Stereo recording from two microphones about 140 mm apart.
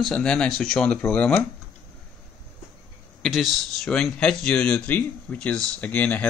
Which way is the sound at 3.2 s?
Centre (ahead or behind).